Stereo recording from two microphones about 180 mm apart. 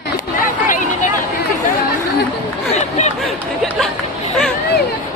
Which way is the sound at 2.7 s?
40° left (ahead or behind).